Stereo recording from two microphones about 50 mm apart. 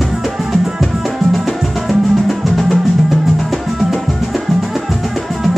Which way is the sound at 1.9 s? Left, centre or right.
Centre.